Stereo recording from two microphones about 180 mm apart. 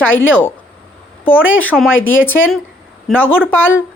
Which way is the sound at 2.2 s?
10° left (ahead or behind).